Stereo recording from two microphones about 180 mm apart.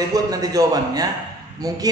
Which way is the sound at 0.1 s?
20° right (ahead or behind).